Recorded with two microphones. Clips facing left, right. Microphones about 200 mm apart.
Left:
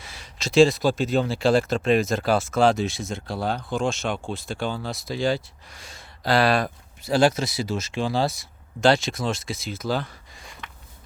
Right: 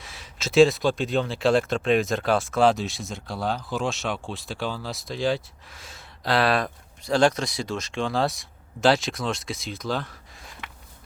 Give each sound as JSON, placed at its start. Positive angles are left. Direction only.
{"t": 0.0, "sound": "speech", "side_deg": 0}